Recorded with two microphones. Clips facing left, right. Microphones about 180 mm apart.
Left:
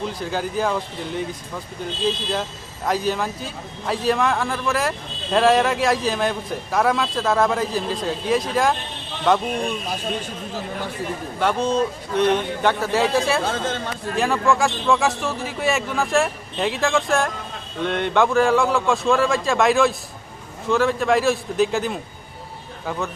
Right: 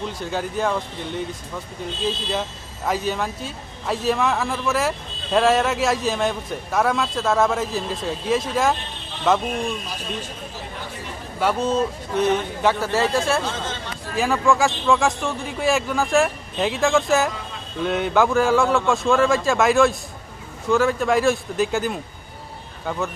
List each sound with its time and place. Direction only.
0.2 s a man's voice: centre (ahead or behind)
11.3 s a man's voice: 5° right (ahead or behind)
13.4 s speech: 50° left (ahead or behind)
14.2 s a man's voice: centre (ahead or behind)